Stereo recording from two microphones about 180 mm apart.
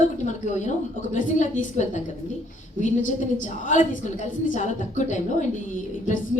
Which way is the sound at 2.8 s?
45° left (ahead or behind).